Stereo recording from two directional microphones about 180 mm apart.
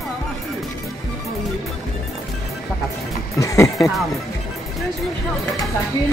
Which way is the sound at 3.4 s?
20° left (ahead or behind).